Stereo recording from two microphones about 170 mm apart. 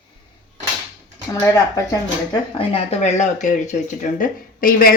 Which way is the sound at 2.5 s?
35° left (ahead or behind).